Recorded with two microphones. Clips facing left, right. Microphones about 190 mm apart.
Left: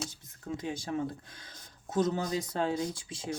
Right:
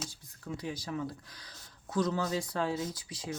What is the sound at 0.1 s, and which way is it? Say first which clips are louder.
Speech: left 3 dB; 20° left (ahead or behind).